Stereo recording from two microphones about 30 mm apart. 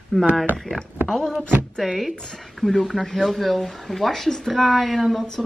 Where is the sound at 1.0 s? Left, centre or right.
Centre.